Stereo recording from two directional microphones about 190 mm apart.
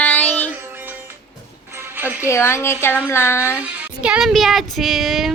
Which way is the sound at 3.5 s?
10° right (ahead or behind).